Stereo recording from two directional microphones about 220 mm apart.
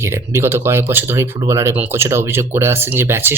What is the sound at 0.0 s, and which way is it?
Speech, 10° right (ahead or behind).